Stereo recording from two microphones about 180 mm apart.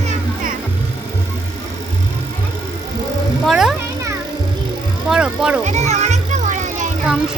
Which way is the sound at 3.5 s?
Centre (ahead or behind).